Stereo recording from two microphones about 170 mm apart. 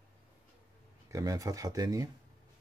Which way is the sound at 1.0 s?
20° right (ahead or behind).